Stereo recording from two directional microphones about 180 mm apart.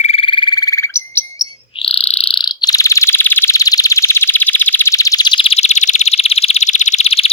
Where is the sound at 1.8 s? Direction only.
35° left (ahead or behind).